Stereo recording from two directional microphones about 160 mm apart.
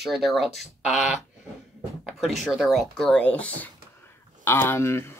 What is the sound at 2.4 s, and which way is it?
Speech, centre (ahead or behind).